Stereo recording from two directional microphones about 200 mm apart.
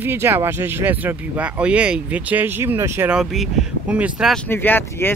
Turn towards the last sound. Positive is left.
turn(degrees=10)  # may be behind; listen again after turning